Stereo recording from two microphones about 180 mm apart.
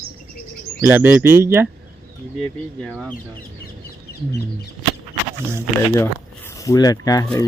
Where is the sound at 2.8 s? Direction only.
Centre (ahead or behind).